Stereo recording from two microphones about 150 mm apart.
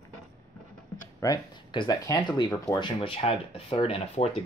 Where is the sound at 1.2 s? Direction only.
30° left (ahead or behind).